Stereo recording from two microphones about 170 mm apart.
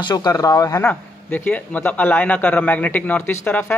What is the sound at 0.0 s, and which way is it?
A man's voice, 20° left (ahead or behind).